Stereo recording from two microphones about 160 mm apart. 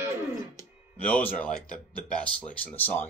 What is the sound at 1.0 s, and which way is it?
A man's voice, 10° left (ahead or behind).